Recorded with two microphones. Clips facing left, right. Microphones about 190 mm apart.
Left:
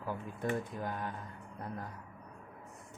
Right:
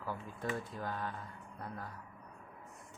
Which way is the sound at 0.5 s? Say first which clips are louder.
Left 3 dB; 15° left (ahead or behind).